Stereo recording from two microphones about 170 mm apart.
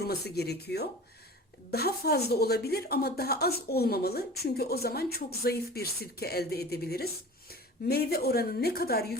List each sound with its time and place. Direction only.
0.0 s a woman's voice: 70° left (ahead or behind)